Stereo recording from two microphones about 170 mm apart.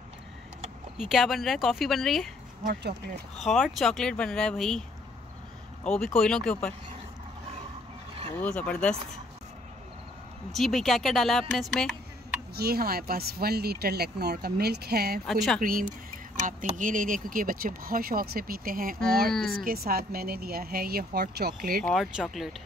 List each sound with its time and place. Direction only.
0.9 s speech: centre (ahead or behind)
2.6 s speech: 70° right (ahead or behind)
3.3 s speech: centre (ahead or behind)
5.9 s speech: 5° left (ahead or behind)
8.4 s speech: 10° left (ahead or behind)
10.5 s speech: centre (ahead or behind)
12.5 s speech: 65° right (ahead or behind)
15.2 s speech: centre (ahead or behind)
15.6 s speech: 55° right (ahead or behind)
21.8 s speech: centre (ahead or behind)